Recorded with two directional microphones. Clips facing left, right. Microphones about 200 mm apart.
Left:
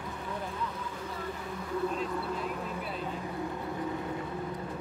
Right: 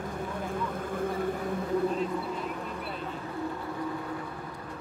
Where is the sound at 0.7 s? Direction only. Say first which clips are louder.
Right 8 dB; 50° right (ahead or behind).